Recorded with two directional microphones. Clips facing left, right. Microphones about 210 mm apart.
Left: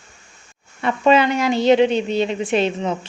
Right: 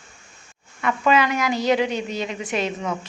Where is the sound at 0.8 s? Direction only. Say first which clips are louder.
Left 4 dB; 30° left (ahead or behind).